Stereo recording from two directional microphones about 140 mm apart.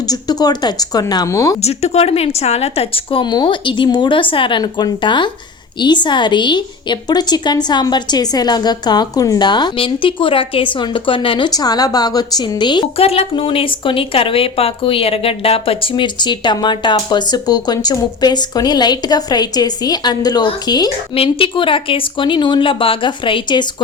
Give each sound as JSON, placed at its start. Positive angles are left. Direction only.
{"t": 0.1, "sound": "a woman's voice", "side_deg": 30}
{"t": 1.6, "sound": "speech", "side_deg": 50}
{"t": 13.0, "sound": "speech", "side_deg": 45}
{"t": 21.2, "sound": "speech", "side_deg": 40}